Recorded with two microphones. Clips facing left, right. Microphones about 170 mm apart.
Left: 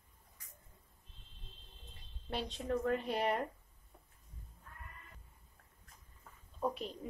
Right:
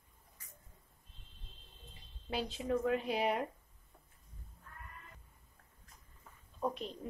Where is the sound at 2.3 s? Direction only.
Centre (ahead or behind).